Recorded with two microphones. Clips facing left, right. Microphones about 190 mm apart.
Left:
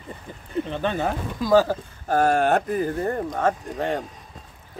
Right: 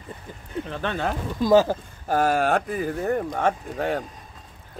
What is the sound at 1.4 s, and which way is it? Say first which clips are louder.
Speech: right 1 dB; 20° right (ahead or behind).